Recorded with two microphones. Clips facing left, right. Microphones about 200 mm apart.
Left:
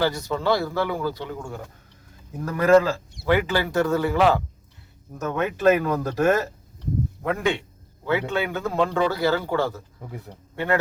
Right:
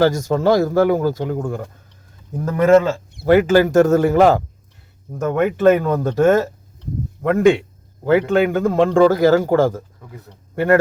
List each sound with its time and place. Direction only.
0.0 s a man's voice: 45° right (ahead or behind)
2.3 s speech: 25° right (ahead or behind)
3.2 s a man's voice: 45° right (ahead or behind)
5.9 s speech: 25° right (ahead or behind)
7.2 s a man's voice: 50° right (ahead or behind)